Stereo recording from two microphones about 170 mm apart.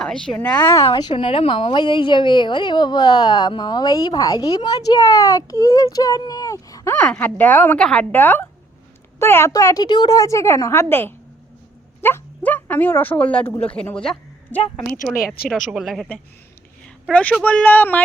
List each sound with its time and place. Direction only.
0.0 s a woman's voice: 5° left (ahead or behind)
0.6 s a woman's voice: 15° left (ahead or behind)
0.9 s a woman's voice: 30° left (ahead or behind)
6.9 s a woman's voice: 5° left (ahead or behind)